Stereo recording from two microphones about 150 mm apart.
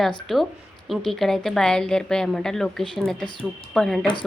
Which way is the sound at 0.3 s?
Centre (ahead or behind).